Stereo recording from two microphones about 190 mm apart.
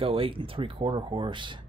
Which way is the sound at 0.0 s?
30° right (ahead or behind).